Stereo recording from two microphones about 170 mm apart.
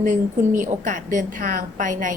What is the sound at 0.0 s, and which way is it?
A woman's voice, 50° right (ahead or behind).